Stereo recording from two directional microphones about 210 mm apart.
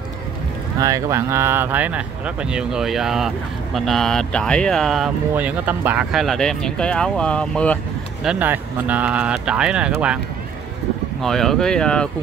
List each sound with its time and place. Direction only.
0.7 s speech: 15° right (ahead or behind)
11.2 s speech: centre (ahead or behind)